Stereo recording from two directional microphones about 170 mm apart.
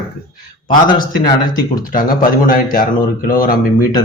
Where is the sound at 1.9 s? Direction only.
55° left (ahead or behind).